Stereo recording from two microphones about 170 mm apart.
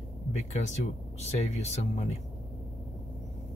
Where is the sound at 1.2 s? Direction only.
40° left (ahead or behind).